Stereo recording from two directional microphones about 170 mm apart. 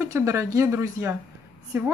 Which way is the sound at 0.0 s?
15° right (ahead or behind).